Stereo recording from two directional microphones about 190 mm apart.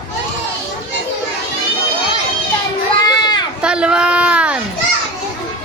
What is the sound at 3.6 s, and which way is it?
Speech, 5° right (ahead or behind).